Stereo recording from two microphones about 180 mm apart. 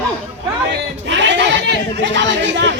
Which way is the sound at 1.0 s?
90° right.